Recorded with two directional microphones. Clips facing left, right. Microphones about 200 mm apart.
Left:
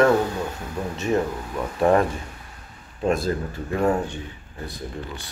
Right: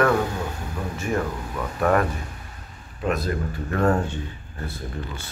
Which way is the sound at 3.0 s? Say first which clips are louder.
Left 3 dB; 30° left (ahead or behind).